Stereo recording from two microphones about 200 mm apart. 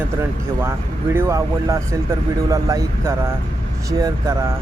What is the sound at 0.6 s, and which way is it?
Speech, 15° right (ahead or behind).